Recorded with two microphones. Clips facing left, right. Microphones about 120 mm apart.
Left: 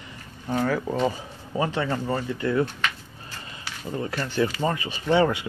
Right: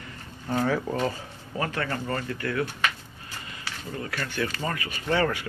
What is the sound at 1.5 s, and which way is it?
Speech, 20° left (ahead or behind).